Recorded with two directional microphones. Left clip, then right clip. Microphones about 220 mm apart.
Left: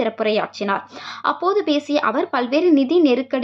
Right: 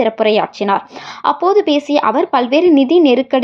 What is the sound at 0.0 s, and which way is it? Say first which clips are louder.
Speech: right 7 dB; 15° right (ahead or behind).